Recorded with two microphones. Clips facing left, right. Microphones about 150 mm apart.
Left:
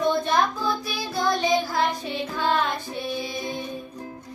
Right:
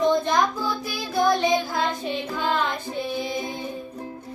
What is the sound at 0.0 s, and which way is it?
Music, 20° right (ahead or behind).